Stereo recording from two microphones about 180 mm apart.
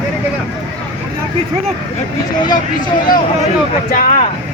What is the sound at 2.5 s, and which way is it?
Speech, 45° left (ahead or behind).